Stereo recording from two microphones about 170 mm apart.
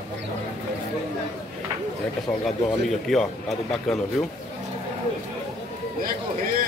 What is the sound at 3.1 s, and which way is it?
Speech, centre (ahead or behind).